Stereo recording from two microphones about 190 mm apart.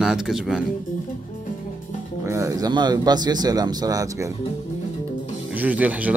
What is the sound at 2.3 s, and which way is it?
Speech, 15° right (ahead or behind).